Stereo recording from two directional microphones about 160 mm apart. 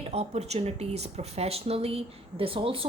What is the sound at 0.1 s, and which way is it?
A woman's voice, 40° right (ahead or behind).